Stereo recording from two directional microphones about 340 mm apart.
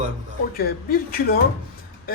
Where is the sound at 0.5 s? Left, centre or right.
Left.